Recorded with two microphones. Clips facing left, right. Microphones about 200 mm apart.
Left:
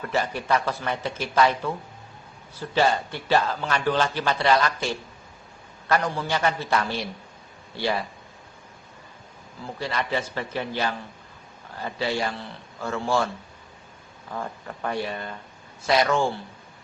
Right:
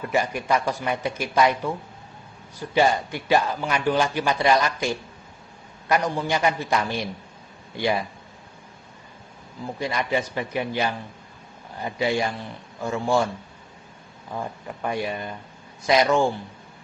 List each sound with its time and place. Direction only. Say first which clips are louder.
0.1 s a man's voice: right 1 dB; 15° right (ahead or behind)
9.6 s a man's voice: right 2 dB; 15° right (ahead or behind)